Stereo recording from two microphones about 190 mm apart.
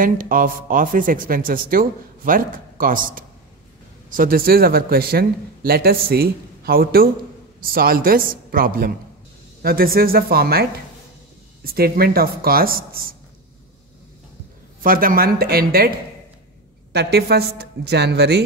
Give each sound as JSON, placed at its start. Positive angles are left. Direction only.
{"t": 0.0, "sound": "speech", "side_deg": -45}
{"t": 14.8, "sound": "speech", "side_deg": -50}
{"t": 16.9, "sound": "a woman's voice", "side_deg": -60}